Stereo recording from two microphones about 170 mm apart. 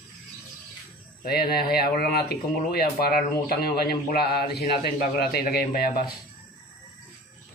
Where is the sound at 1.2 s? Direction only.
65° left (ahead or behind).